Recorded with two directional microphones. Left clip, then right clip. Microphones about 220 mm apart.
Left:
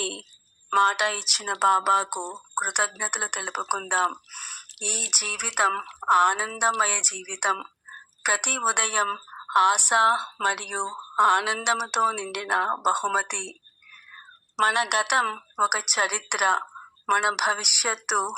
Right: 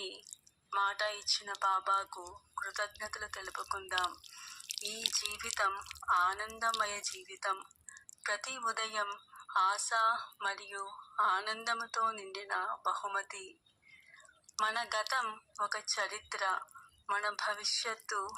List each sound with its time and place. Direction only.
0.0 s a sound: 50° left (ahead or behind)
0.7 s a woman's voice: 50° left (ahead or behind)
14.6 s a woman's voice: 45° left (ahead or behind)